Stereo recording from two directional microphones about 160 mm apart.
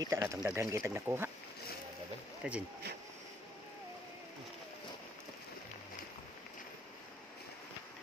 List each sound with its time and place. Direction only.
0.0 s speech: 20° right (ahead or behind)
2.4 s speech: 5° right (ahead or behind)